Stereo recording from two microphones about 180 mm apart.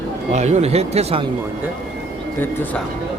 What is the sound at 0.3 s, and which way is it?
Speech, 40° right (ahead or behind).